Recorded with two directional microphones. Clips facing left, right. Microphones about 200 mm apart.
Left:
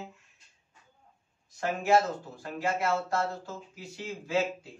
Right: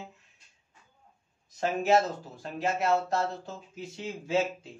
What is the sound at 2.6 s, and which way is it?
Speech, 20° right (ahead or behind).